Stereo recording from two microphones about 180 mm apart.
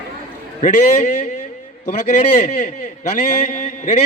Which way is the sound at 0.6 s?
50° left (ahead or behind).